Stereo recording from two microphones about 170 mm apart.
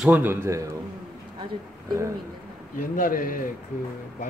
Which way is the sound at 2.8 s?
50° left (ahead or behind).